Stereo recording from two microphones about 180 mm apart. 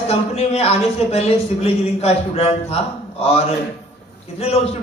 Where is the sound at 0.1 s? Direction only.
35° left (ahead or behind).